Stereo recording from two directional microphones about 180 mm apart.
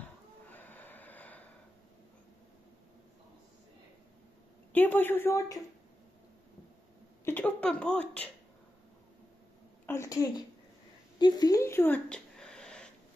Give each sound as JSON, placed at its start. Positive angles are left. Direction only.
{"t": 0.5, "sound": "snort", "side_deg": 10}
{"t": 4.7, "sound": "a woman's voice", "side_deg": 10}
{"t": 7.2, "sound": "speech", "side_deg": 10}
{"t": 9.8, "sound": "speech", "side_deg": 15}
{"t": 11.1, "sound": "a sound", "side_deg": 20}